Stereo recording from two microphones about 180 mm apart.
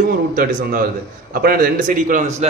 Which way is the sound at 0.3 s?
55° right (ahead or behind).